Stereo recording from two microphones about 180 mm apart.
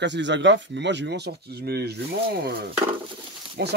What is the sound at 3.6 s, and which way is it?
Speech, 65° right (ahead or behind).